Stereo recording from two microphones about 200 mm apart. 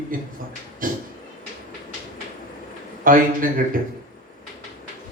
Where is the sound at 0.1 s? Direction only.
45° right (ahead or behind).